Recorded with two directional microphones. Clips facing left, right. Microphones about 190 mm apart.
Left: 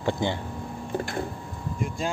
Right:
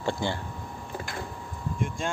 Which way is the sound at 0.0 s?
20° left (ahead or behind).